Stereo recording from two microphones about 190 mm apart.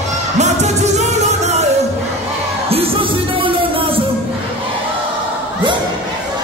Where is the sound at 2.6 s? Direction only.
30° right (ahead or behind).